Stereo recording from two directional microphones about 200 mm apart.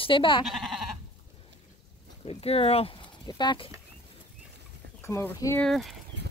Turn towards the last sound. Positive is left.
turn(degrees=0)  # may be behind; listen again after turning